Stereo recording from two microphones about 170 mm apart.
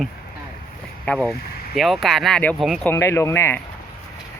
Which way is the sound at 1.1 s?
10° left (ahead or behind).